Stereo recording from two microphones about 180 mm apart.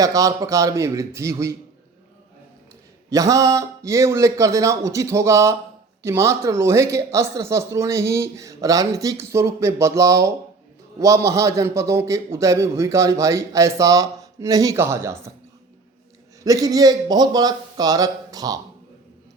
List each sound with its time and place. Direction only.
0.0 s speech: 20° right (ahead or behind)
3.1 s speech: 20° right (ahead or behind)
16.4 s a man's voice: 20° right (ahead or behind)